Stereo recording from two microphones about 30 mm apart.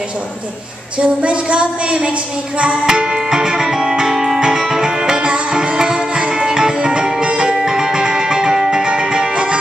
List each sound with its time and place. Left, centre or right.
0.9 s a sound: right
2.9 s music: right
4.1 s music: centre
4.4 s music: centre
5.1 s music: right
6.3 s music: right
7.6 s music: centre